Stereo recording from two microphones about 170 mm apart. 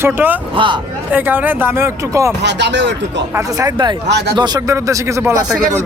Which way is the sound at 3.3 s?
20° right (ahead or behind).